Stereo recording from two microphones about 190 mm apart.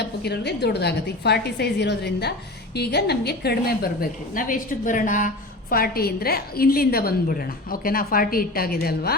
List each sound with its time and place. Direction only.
0.0 s a woman's voice: 60° left (ahead or behind)
4.4 s a woman's voice: 45° left (ahead or behind)